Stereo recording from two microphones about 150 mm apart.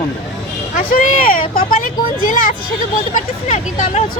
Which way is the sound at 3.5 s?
50° left (ahead or behind).